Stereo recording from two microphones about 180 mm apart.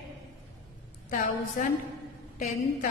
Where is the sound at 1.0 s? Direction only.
45° left (ahead or behind).